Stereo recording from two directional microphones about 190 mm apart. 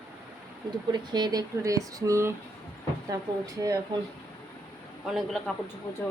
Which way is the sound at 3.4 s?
20° right (ahead or behind).